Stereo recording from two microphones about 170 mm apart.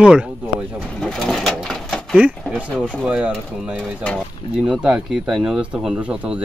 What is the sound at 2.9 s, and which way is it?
Speech, 5° right (ahead or behind).